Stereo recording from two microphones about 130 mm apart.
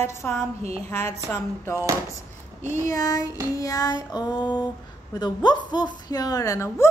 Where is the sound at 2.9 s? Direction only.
25° left (ahead or behind).